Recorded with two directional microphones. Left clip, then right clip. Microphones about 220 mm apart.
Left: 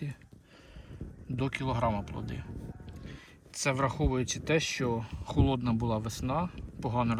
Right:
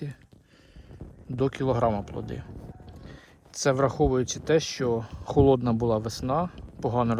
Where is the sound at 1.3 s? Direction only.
15° right (ahead or behind).